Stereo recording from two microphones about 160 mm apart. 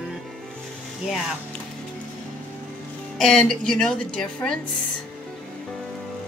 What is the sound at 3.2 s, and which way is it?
A woman's voice, centre (ahead or behind).